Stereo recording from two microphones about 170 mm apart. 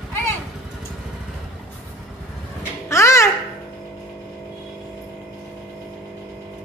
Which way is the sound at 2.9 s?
15° left (ahead or behind).